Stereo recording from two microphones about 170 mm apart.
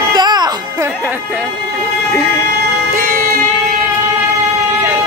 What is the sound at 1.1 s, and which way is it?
Music, 10° right (ahead or behind).